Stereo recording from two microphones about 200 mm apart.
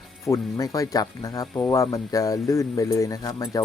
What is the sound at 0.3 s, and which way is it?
Speech, 15° left (ahead or behind).